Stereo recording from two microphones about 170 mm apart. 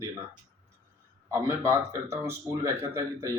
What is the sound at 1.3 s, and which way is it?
Speech, 15° right (ahead or behind).